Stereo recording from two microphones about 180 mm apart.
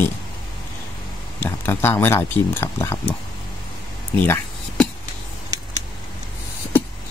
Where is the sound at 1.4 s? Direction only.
10° left (ahead or behind).